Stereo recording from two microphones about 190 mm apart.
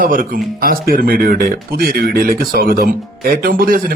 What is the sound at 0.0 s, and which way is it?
A man's voice, 45° right (ahead or behind).